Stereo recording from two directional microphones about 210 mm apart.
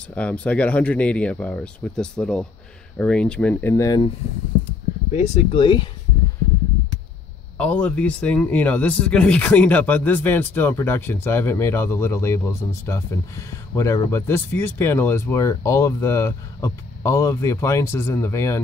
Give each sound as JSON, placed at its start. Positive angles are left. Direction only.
{"t": 0.1, "sound": "a man's voice", "side_deg": 5}
{"t": 4.6, "sound": "speech", "side_deg": 35}
{"t": 7.5, "sound": "a man's voice", "side_deg": 5}